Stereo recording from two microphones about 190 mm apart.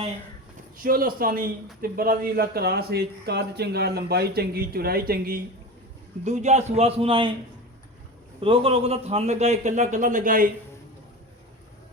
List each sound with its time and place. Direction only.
0.8 s a man's voice: 50° right (ahead or behind)
6.2 s a man's voice: 40° right (ahead or behind)
8.4 s a man's voice: 30° right (ahead or behind); by 10.5 s 45° right (ahead or behind)